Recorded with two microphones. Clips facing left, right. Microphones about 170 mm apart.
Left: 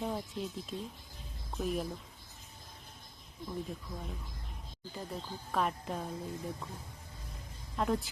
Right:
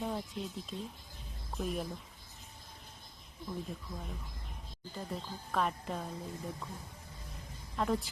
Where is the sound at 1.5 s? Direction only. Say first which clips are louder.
Left 2 dB; centre (ahead or behind).